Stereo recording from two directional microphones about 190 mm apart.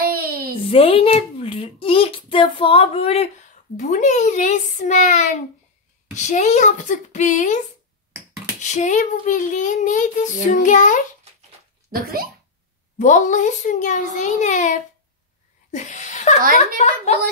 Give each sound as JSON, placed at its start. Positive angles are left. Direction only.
{"t": 0.0, "sound": "a sound", "side_deg": -50}
{"t": 0.6, "sound": "a child's voice", "side_deg": 30}
{"t": 3.7, "sound": "child singing", "side_deg": 40}
{"t": 11.9, "sound": "a child's voice", "side_deg": -50}
{"t": 13.0, "sound": "child singing", "side_deg": 40}
{"t": 15.7, "sound": "a sound", "side_deg": 40}
{"t": 16.8, "sound": "child singing", "side_deg": 35}